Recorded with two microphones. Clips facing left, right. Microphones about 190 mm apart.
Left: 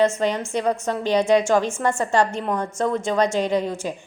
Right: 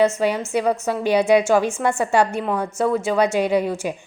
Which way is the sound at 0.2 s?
10° right (ahead or behind).